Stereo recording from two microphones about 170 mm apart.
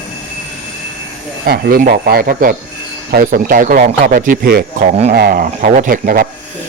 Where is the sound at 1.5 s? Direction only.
55° right (ahead or behind).